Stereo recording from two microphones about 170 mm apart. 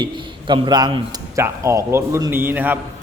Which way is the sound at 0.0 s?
25° right (ahead or behind).